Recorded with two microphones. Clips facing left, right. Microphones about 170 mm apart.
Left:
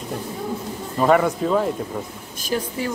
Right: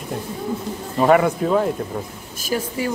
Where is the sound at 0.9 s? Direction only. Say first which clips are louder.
Right 2 dB; 5° right (ahead or behind).